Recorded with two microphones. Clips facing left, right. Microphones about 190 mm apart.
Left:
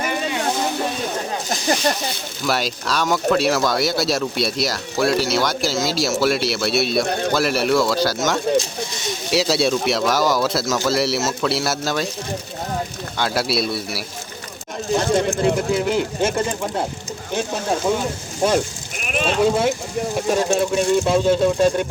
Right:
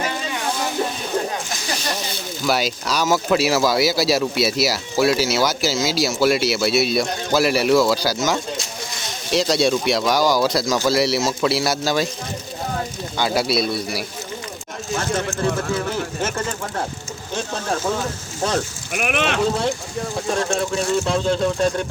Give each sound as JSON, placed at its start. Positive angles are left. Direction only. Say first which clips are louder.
{"t": 2.5, "sound": "speech", "louder": "right 1 dB", "side_deg": 0}
{"t": 13.1, "sound": "speech", "louder": "right 1 dB", "side_deg": 0}
{"t": 14.9, "sound": "speech", "louder": "left 5 dB", "side_deg": 20}
{"t": 18.9, "sound": "speech", "louder": "right 1 dB", "side_deg": -75}
{"t": 20.3, "sound": "speech", "louder": "left 3 dB", "side_deg": 10}